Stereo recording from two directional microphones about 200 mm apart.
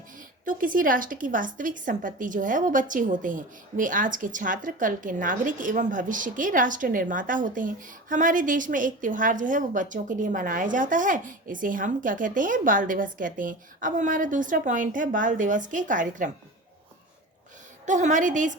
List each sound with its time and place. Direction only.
0.4 s a woman's voice: 45° right (ahead or behind)
17.8 s a woman's voice: 40° right (ahead or behind)